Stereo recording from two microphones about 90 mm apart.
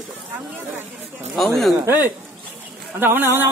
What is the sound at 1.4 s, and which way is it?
Speech, centre (ahead or behind).